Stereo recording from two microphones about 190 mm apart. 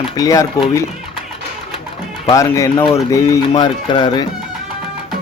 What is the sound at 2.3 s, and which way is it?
Speech, 15° left (ahead or behind).